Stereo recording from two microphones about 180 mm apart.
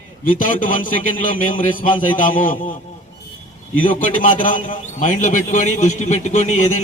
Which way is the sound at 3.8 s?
45° left (ahead or behind).